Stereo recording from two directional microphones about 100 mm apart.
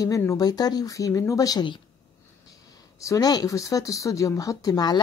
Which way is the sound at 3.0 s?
35° left (ahead or behind).